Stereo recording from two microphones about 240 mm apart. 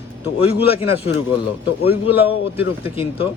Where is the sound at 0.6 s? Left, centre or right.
Left.